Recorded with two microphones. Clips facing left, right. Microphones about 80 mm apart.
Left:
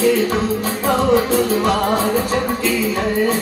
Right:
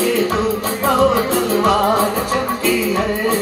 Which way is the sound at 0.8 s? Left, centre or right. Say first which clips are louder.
Right 1 dB; right.